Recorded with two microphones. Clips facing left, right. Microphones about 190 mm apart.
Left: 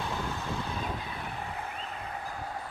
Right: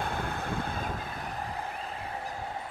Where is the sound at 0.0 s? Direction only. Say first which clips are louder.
Right 1 dB; 55° right (ahead or behind).